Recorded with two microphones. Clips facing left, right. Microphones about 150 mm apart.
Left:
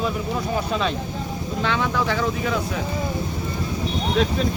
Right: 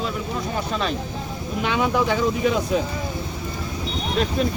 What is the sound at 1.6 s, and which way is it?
Speech, 15° right (ahead or behind).